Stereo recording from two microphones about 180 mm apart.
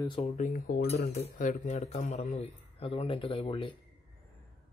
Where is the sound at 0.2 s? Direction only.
45° left (ahead or behind); by 3.7 s 30° left (ahead or behind).